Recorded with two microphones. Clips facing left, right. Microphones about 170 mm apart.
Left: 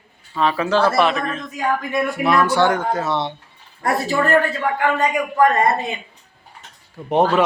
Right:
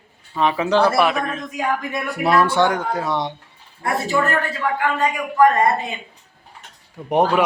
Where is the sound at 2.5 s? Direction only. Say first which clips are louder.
Left 1 dB; 15° right (ahead or behind).